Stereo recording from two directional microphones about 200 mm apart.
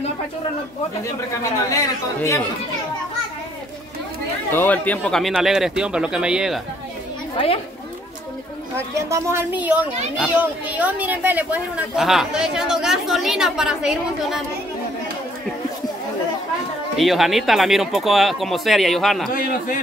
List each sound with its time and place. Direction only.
1.3 s speech: 15° left (ahead or behind)
4.5 s speech: 10° left (ahead or behind)
7.3 s speech: 30° left (ahead or behind)
8.7 s a woman's voice: 15° right (ahead or behind)
16.9 s speech: centre (ahead or behind)